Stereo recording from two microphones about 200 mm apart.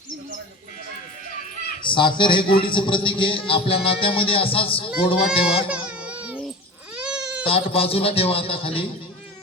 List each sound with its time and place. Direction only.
1.8 s a man's voice: 25° left (ahead or behind)
5.6 s baby cry: 5° right (ahead or behind)
7.0 s goat: 5° right (ahead or behind)
7.4 s a man's voice: 30° left (ahead or behind)